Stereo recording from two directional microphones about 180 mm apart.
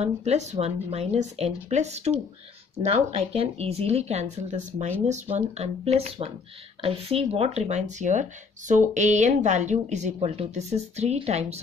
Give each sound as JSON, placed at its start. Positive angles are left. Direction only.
{"t": 0.0, "sound": "speech", "side_deg": -35}